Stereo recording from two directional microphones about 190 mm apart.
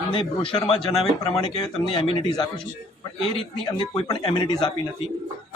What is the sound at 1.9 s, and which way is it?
Speech, 25° left (ahead or behind).